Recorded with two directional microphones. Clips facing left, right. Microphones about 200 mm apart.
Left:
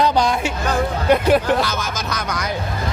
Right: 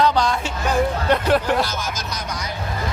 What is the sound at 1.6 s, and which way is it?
Speech, 65° left (ahead or behind).